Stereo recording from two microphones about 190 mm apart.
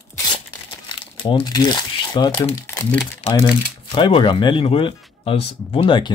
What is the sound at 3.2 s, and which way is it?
Speech, 35° left (ahead or behind).